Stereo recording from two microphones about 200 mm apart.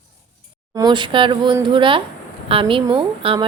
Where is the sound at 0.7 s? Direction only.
20° right (ahead or behind).